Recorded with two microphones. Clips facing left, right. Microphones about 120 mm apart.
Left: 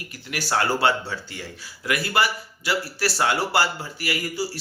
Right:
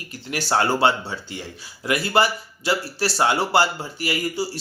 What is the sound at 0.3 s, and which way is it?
Speech, 25° right (ahead or behind).